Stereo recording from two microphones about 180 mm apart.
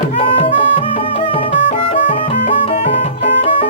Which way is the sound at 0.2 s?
30° left (ahead or behind).